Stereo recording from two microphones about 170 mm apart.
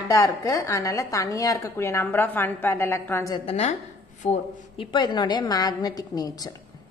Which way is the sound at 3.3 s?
35° left (ahead or behind).